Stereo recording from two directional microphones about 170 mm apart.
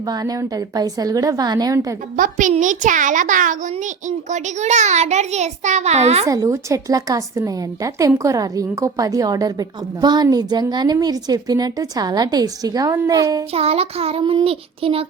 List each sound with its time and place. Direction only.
0.0 s a woman's voice: 20° right (ahead or behind)
2.1 s a child's voice: 50° right (ahead or behind)
6.2 s a woman's voice: 20° right (ahead or behind)
13.5 s child singing: 35° right (ahead or behind)